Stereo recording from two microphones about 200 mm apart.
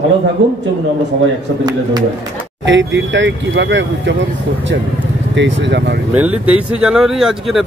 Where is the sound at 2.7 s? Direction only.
65° right (ahead or behind).